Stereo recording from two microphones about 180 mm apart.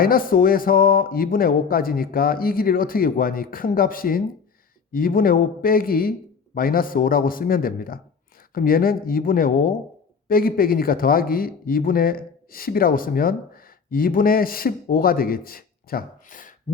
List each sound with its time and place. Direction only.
0.0 s speech: 55° left (ahead or behind)